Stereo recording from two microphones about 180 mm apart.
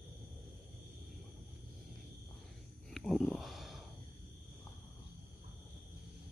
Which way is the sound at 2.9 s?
Centre (ahead or behind).